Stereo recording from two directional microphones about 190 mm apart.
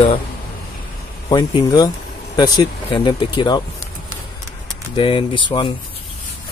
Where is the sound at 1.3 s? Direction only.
20° left (ahead or behind).